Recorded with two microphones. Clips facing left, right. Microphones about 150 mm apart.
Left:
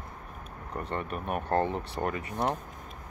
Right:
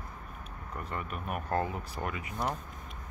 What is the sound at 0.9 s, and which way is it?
Speech, 35° left (ahead or behind).